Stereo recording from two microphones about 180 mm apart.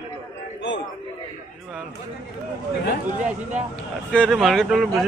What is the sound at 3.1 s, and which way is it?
Speech, 45° right (ahead or behind).